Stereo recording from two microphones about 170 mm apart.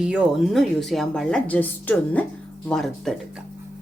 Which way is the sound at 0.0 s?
5° right (ahead or behind).